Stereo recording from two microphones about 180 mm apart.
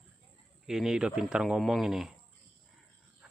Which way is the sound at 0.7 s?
5° right (ahead or behind).